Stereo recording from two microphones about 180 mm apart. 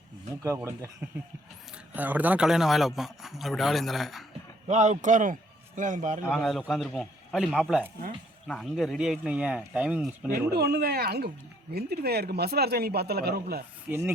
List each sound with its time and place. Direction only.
0.4 s speech: 15° right (ahead or behind)
1.9 s a man's voice: 10° right (ahead or behind)
4.7 s a man's voice: 40° right (ahead or behind)
6.2 s a man's voice: centre (ahead or behind)
10.5 s speech: 65° right (ahead or behind)